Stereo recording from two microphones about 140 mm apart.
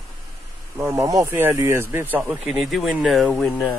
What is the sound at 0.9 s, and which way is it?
Speech, 20° right (ahead or behind).